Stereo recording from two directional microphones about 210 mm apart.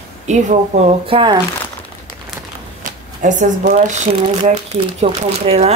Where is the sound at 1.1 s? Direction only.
25° right (ahead or behind).